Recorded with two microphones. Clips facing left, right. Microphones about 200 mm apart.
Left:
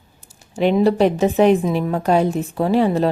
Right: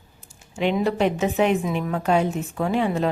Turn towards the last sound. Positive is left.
turn(degrees=35)  # may be behind; listen again after turning